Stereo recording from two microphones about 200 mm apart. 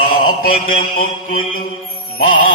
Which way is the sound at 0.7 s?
50° left (ahead or behind).